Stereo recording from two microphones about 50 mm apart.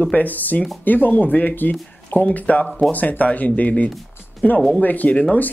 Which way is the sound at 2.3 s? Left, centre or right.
Left.